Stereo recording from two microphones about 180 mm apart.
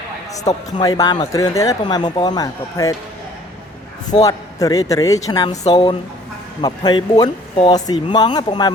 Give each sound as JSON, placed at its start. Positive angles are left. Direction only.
{"t": 0.4, "sound": "speech", "side_deg": 20}
{"t": 4.2, "sound": "speech", "side_deg": 20}